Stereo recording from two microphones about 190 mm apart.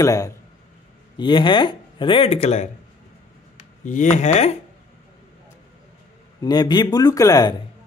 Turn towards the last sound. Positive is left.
turn(degrees=20)  # may be behind; listen again after turning